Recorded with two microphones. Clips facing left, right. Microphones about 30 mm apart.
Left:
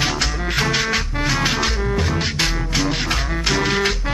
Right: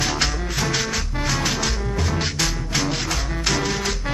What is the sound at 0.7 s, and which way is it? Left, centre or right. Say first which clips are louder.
Music: left 4 dB; left.